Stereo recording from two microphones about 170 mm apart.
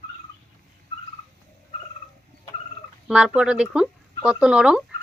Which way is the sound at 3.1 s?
5° right (ahead or behind).